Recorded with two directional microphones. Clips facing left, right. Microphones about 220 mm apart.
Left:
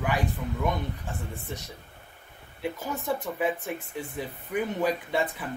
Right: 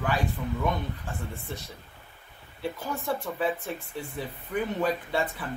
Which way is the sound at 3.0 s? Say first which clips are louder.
Left 1 dB; 20° left (ahead or behind).